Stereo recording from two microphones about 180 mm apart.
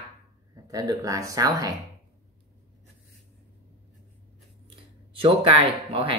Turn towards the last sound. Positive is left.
turn(degrees=-30)  # may be behind; listen again after turning